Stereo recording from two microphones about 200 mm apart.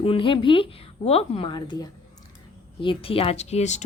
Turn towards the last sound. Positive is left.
turn(degrees=35)  # may be behind; listen again after turning